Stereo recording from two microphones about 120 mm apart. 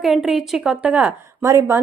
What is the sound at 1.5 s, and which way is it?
Speech, 25° right (ahead or behind).